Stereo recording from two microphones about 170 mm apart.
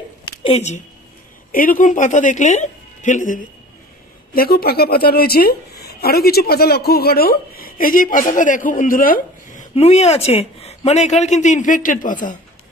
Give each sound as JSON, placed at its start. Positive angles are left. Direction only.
{"t": 0.4, "sound": "speech", "side_deg": 35}
{"t": 1.5, "sound": "a woman's voice", "side_deg": 55}
{"t": 4.3, "sound": "a woman's voice", "side_deg": 60}